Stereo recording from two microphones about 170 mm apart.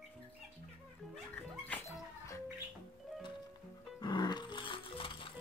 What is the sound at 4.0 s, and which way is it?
Music, 25° left (ahead or behind).